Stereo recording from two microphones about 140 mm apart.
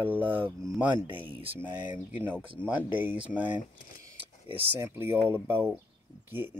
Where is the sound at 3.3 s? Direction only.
10° right (ahead or behind).